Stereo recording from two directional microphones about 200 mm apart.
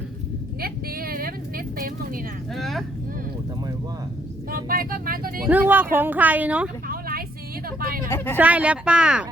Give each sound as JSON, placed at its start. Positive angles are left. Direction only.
{"t": 0.6, "sound": "vehicle", "side_deg": -50}
{"t": 2.6, "sound": "a sound", "side_deg": 0}
{"t": 4.5, "sound": "vehicle", "side_deg": -45}
{"t": 5.5, "sound": "speech", "side_deg": -10}
{"t": 6.8, "sound": "vehicle", "side_deg": -50}
{"t": 7.8, "sound": "a sound", "side_deg": -45}
{"t": 8.0, "sound": "speech", "side_deg": 10}
{"t": 8.4, "sound": "speech", "side_deg": -5}